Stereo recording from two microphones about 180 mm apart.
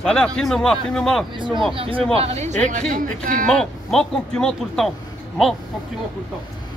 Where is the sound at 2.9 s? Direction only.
50° right (ahead or behind).